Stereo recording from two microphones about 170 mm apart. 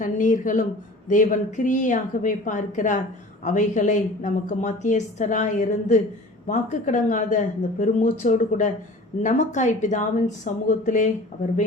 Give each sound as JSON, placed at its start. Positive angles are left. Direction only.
{"t": 0.0, "sound": "speech", "side_deg": 50}